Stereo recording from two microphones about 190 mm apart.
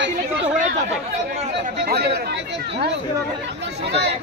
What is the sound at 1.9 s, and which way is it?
Speech, 55° right (ahead or behind).